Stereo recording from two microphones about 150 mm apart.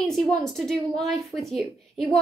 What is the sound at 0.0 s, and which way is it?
A woman's voice, 5° left (ahead or behind).